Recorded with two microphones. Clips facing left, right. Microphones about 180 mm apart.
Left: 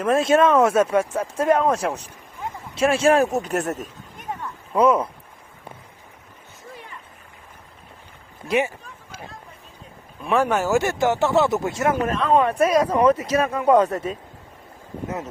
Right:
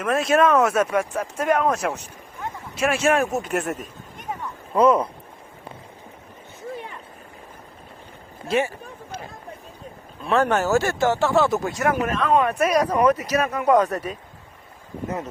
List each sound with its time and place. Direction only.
0.0 s speech: 25° left (ahead or behind)
4.3 s a sound: 5° left (ahead or behind)
8.4 s speech: 15° left (ahead or behind)
10.2 s speech: 10° left (ahead or behind); by 14.2 s 25° left (ahead or behind)